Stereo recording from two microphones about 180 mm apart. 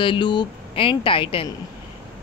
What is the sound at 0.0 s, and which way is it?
Speech, 25° left (ahead or behind).